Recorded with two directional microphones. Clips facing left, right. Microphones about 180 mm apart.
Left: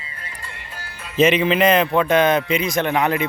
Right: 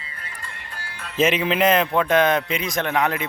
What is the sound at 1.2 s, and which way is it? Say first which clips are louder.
Speech: left 4 dB; 5° right (ahead or behind).